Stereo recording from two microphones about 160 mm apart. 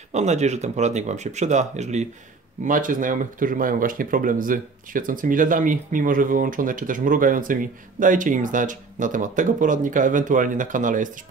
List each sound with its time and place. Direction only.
0.1 s speech: 45° right (ahead or behind)
2.6 s speech: 55° right (ahead or behind)